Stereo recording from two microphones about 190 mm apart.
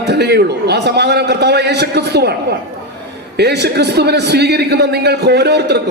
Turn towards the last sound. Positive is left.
turn(degrees=-60)  # may be behind; listen again after turning